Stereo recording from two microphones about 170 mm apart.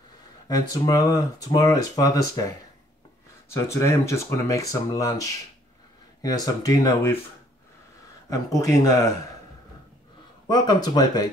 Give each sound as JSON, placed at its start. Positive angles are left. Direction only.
{"t": 0.5, "sound": "speech", "side_deg": 20}
{"t": 8.3, "sound": "speech", "side_deg": 20}
{"t": 10.5, "sound": "speech", "side_deg": 25}